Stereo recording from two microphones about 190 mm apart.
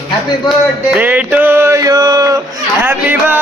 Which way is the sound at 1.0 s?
10° right (ahead or behind).